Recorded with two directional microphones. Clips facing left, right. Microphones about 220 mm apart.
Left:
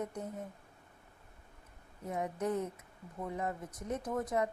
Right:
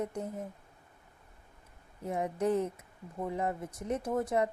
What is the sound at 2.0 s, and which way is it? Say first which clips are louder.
Speech: right 4 dB; 30° right (ahead or behind).